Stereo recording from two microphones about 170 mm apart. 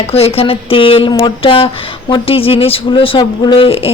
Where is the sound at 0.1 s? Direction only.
35° left (ahead or behind).